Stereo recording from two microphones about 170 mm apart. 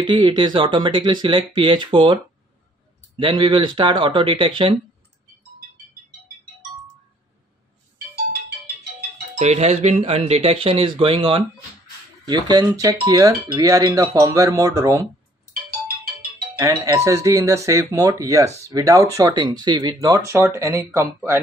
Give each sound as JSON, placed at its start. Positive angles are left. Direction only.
{"t": 0.0, "sound": "speech", "side_deg": -25}
{"t": 3.2, "sound": "speech", "side_deg": -25}
{"t": 9.4, "sound": "speech", "side_deg": -40}
{"t": 16.5, "sound": "speech", "side_deg": -20}